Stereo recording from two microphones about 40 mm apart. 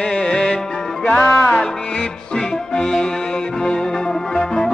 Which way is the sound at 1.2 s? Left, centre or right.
Left.